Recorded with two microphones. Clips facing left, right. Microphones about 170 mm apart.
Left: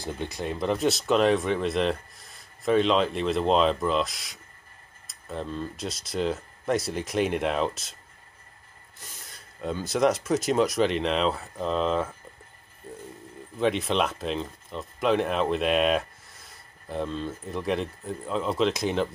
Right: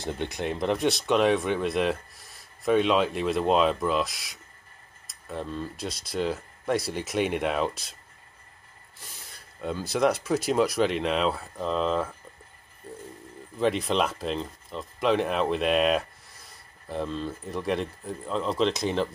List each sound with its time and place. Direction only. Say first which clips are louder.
0.2 s speech: right 1 dB; 60° right (ahead or behind)
0.7 s speech: left 1 dB; centre (ahead or behind)
9.0 s speech: left 1 dB; centre (ahead or behind)
13.6 s speech: even; centre (ahead or behind)